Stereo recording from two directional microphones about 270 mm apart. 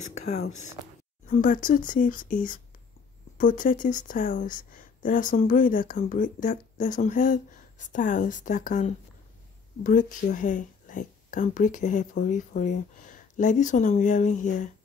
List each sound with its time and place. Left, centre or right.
0.0 s speech: left